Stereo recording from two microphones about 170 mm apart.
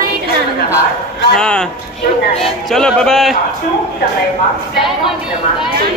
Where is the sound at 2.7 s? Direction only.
5° left (ahead or behind).